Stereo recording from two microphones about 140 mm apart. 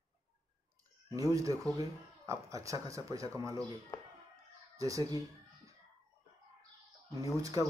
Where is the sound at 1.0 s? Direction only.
25° right (ahead or behind).